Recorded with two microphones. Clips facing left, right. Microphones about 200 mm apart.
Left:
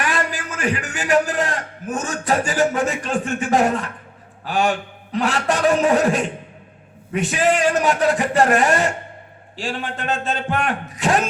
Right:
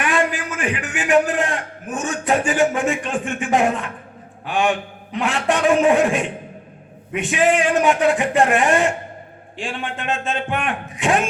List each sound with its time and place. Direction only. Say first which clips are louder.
0.0 s a man's voice: right 3 dB; 40° left (ahead or behind)